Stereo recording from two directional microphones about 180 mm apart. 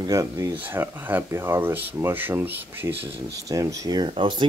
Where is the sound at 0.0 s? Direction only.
15° right (ahead or behind).